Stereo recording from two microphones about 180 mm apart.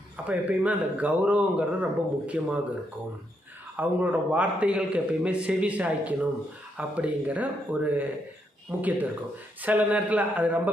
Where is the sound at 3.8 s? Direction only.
5° right (ahead or behind).